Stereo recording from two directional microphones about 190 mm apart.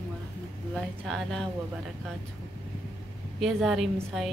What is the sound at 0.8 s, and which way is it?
Speech, centre (ahead or behind).